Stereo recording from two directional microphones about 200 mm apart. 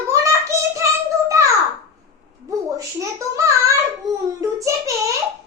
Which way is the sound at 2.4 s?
15° right (ahead or behind).